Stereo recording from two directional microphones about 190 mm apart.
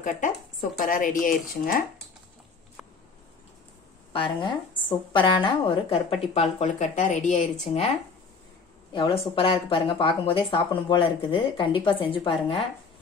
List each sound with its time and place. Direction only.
0.7 s speech: 45° left (ahead or behind)
4.1 s a woman's voice: 25° left (ahead or behind)
8.9 s a woman's voice: 30° left (ahead or behind)